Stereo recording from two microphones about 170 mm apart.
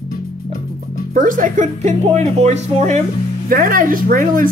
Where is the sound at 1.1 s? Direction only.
50° right (ahead or behind).